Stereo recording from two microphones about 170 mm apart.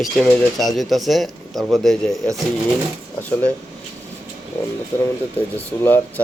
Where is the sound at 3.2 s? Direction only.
10° left (ahead or behind).